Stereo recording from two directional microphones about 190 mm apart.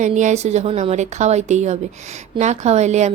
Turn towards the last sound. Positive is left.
turn(degrees=-35)  # may be behind; listen again after turning